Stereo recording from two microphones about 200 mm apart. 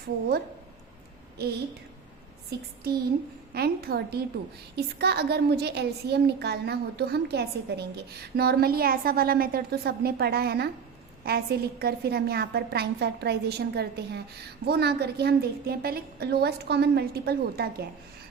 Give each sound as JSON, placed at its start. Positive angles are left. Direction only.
{"t": 1.4, "sound": "a woman's voice", "side_deg": -50}